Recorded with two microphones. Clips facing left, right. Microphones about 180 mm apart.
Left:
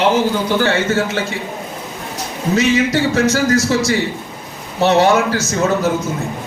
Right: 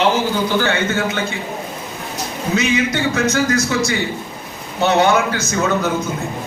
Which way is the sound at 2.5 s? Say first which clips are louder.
Left 4 dB; 35° left (ahead or behind).